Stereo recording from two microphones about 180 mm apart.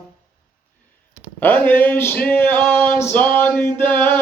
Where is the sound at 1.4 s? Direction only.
10° left (ahead or behind).